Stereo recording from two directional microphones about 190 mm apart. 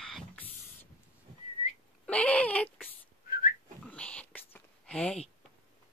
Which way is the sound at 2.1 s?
5° left (ahead or behind).